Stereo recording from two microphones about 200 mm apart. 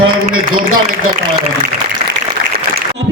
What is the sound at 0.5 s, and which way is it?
Speech, 45° right (ahead or behind).